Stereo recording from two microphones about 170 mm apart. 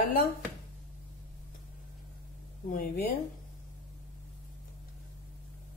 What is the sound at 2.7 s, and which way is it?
Speech, 60° left (ahead or behind).